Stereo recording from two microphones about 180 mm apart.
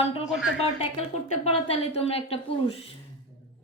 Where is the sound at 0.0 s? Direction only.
30° left (ahead or behind).